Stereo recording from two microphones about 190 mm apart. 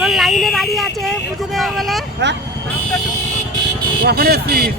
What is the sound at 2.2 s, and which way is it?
Speech, 65° right (ahead or behind).